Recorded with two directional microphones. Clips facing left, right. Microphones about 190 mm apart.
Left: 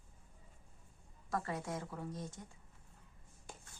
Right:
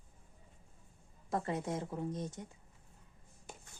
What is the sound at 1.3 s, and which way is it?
A woman's voice, 20° right (ahead or behind).